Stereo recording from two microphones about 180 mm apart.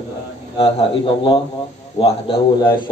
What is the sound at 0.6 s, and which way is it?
A man's voice, 30° left (ahead or behind).